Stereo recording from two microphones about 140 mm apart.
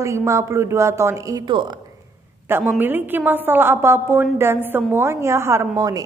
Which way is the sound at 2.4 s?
15° right (ahead or behind).